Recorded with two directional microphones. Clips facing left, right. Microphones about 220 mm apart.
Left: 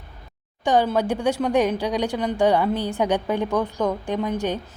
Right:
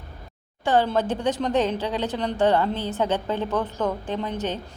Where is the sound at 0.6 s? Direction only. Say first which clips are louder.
Left 1 dB; 15° left (ahead or behind).